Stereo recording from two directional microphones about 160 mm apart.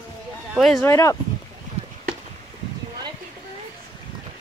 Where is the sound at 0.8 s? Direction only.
20° left (ahead or behind).